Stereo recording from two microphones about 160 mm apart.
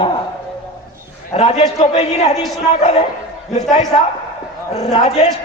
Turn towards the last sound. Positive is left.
turn(degrees=40)  # may be behind; listen again after turning